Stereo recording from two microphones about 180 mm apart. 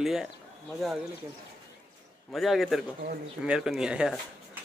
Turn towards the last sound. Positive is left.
turn(degrees=-5)  # may be behind; listen again after turning